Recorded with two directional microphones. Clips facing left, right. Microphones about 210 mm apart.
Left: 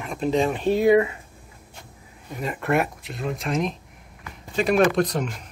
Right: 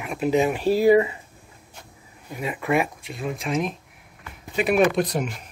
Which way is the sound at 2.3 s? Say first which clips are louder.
Even; 5° right (ahead or behind).